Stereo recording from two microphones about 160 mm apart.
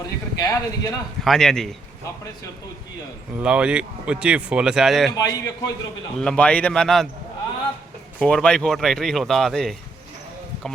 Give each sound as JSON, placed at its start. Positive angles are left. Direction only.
{"t": 0.3, "sound": "speech", "side_deg": 20}
{"t": 1.2, "sound": "speech", "side_deg": 0}
{"t": 3.3, "sound": "speech", "side_deg": -5}
{"t": 5.1, "sound": "speech", "side_deg": 20}
{"t": 6.1, "sound": "speech", "side_deg": 5}
{"t": 8.2, "sound": "speech", "side_deg": 5}